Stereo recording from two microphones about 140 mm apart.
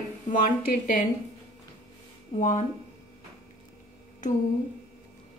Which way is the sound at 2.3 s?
60° left (ahead or behind).